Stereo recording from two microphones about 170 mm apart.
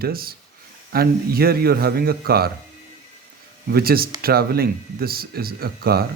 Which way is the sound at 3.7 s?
65° right (ahead or behind).